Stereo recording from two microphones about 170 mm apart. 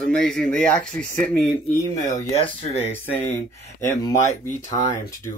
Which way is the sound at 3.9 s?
15° left (ahead or behind).